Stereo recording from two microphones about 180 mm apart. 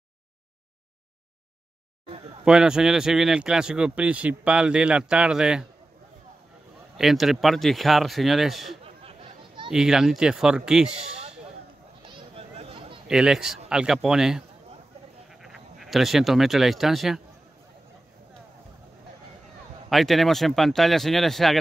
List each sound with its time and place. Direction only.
2.4 s speech: 5° right (ahead or behind)
7.0 s speech: centre (ahead or behind)
8.8 s a sound: 30° right (ahead or behind)
9.7 s speech: 5° right (ahead or behind)
10.9 s speech: 35° right (ahead or behind)
12.1 s a sound: 30° right (ahead or behind)
13.1 s speech: 5° right (ahead or behind)
19.9 s speech: centre (ahead or behind)